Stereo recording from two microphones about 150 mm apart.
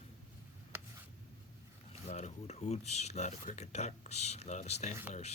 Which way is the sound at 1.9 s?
50° left (ahead or behind).